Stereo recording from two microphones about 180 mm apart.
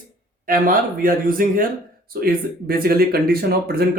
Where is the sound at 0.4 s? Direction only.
50° right (ahead or behind).